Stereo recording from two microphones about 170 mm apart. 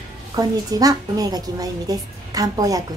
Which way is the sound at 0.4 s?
20° right (ahead or behind).